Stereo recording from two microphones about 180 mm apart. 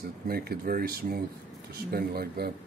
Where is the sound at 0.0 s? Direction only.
55° right (ahead or behind).